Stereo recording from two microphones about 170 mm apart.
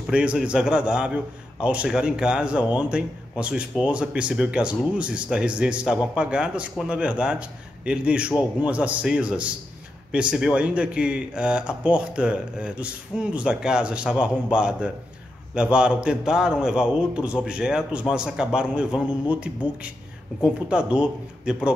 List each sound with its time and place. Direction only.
0.0 s a man's voice: 5° right (ahead or behind)